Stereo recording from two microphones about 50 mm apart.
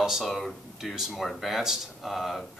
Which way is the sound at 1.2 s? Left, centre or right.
Centre.